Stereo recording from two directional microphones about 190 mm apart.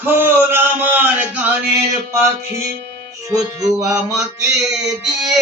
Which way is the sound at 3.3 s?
20° right (ahead or behind).